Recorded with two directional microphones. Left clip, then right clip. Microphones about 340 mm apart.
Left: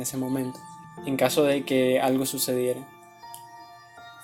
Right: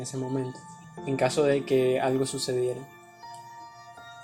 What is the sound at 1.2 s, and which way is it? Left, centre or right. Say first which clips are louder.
Speech: left 2 dB; centre.